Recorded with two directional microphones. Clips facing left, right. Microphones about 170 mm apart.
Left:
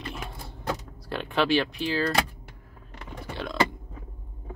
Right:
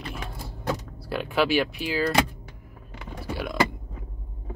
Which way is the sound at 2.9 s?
5° right (ahead or behind).